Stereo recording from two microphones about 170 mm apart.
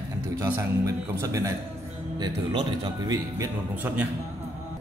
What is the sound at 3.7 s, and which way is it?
Speech, 10° right (ahead or behind).